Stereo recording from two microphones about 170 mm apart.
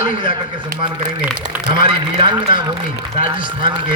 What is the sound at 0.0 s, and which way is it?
Speech, 25° right (ahead or behind).